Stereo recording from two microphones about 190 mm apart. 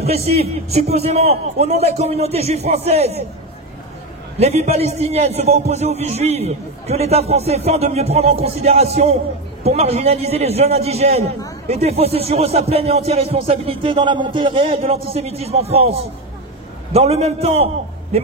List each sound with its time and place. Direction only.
0.0 s speech: 35° right (ahead or behind)
4.4 s speech: 35° right (ahead or behind)